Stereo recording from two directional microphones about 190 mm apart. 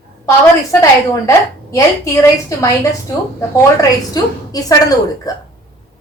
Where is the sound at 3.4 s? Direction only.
20° left (ahead or behind).